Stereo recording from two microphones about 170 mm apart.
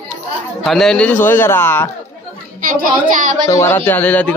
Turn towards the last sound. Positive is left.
turn(degrees=10)  # may be behind; listen again after turning